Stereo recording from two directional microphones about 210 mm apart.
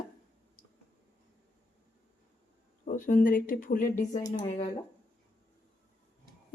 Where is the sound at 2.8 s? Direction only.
40° left (ahead or behind).